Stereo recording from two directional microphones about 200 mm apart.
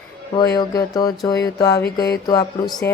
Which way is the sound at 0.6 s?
20° left (ahead or behind).